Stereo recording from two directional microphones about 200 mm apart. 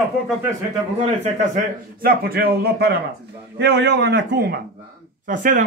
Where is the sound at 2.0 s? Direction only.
50° right (ahead or behind).